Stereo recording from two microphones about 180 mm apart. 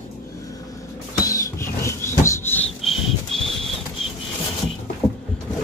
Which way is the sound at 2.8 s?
Centre (ahead or behind).